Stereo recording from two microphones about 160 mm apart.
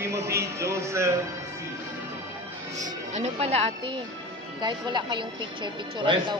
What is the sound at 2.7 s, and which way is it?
A woman's voice, 45° right (ahead or behind).